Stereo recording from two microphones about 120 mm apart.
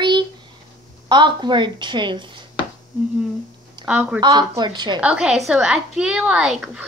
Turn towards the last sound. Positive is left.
turn(degrees=-5)  # may be behind; listen again after turning